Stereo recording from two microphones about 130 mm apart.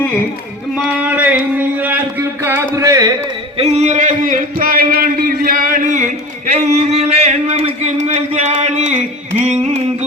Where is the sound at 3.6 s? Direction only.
55° right (ahead or behind); by 6.0 s 80° right.